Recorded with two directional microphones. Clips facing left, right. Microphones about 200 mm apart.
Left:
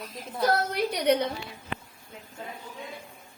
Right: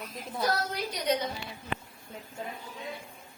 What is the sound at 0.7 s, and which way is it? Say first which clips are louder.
Speech: left 6 dB; 65° left (ahead or behind).